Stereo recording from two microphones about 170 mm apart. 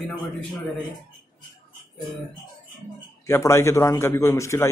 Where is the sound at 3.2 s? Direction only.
15° left (ahead or behind).